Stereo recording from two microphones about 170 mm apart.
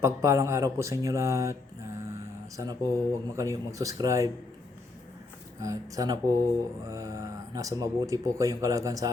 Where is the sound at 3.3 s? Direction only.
20° right (ahead or behind).